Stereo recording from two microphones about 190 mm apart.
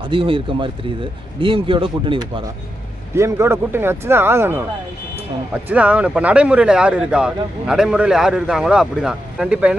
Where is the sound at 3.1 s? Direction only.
15° right (ahead or behind).